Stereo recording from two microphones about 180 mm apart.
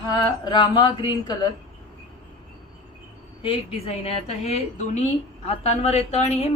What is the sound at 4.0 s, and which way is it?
A woman's voice, 35° left (ahead or behind).